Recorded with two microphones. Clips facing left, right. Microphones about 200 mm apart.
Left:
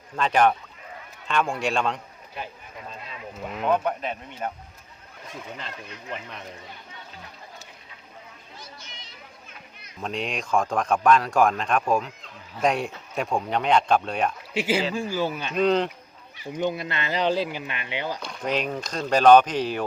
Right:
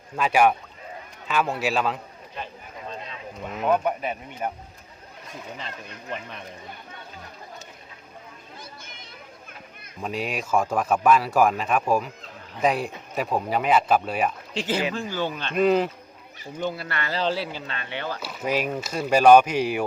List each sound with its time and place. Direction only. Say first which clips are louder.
0.2 s speech: right 1 dB; 10° right (ahead or behind)
3.1 s a sound: even; 5° left (ahead or behind)
3.7 s speech: right 1 dB; 10° right (ahead or behind)
5.5 s speech: right 1 dB; centre (ahead or behind)
8.5 s children playing: even; 55° right (ahead or behind)
10.0 s speech: right 1 dB; 5° right (ahead or behind)
14.5 s speech: left 2 dB; 10° left (ahead or behind)
15.5 s speech: right 2 dB; 5° right (ahead or behind)
16.5 s speech: left 3 dB; 20° left (ahead or behind)
18.2 s speech: right 4 dB; 5° right (ahead or behind)